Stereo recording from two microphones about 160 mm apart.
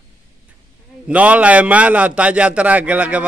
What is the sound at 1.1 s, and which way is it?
A man's voice, 10° right (ahead or behind).